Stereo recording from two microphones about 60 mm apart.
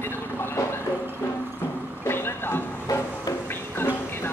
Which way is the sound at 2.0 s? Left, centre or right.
Left.